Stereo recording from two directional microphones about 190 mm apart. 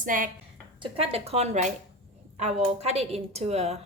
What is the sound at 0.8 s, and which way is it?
A woman's voice, 30° right (ahead or behind).